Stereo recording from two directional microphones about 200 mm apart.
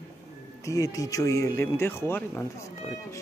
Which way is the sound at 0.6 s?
15° left (ahead or behind).